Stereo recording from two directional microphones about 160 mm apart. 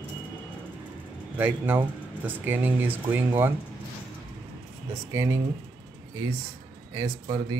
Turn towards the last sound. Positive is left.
turn(degrees=-25)  # may be behind; listen again after turning